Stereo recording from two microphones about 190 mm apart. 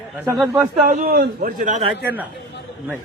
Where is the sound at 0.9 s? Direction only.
50° right (ahead or behind).